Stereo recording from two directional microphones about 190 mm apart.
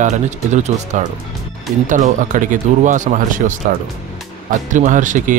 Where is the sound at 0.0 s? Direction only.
40° right (ahead or behind).